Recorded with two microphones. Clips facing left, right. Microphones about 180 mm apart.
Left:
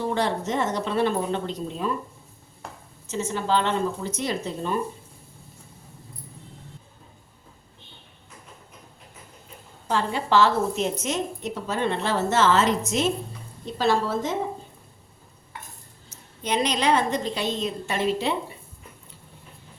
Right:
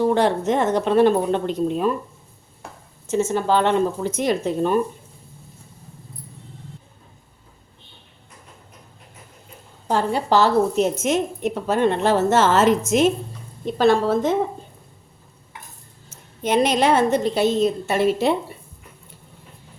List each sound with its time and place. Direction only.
0.1 s speech: 55° right (ahead or behind)
3.1 s a woman's voice: 50° right (ahead or behind)
9.8 s a woman's voice: 45° right (ahead or behind)
16.0 s a woman's voice: 50° right (ahead or behind)